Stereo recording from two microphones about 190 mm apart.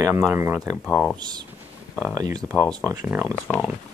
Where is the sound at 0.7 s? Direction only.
5° right (ahead or behind).